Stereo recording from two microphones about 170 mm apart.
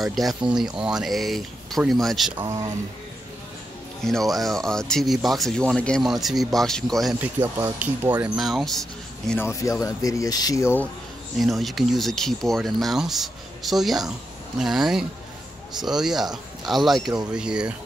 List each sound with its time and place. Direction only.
0.0 s speech: centre (ahead or behind)
2.3 s speech: 20° right (ahead or behind)
4.0 s speech: centre (ahead or behind)
7.2 s speech: 10° right (ahead or behind)
8.2 s speech: centre (ahead or behind)
9.3 s speech: 15° left (ahead or behind)
11.3 s speech: centre (ahead or behind)